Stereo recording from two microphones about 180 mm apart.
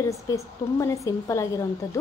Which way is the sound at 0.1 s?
15° left (ahead or behind).